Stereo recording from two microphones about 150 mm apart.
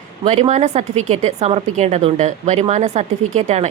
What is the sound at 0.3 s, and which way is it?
A woman's voice, 45° right (ahead or behind).